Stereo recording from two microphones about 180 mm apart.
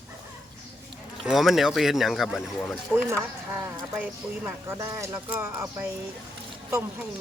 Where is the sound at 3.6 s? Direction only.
15° right (ahead or behind).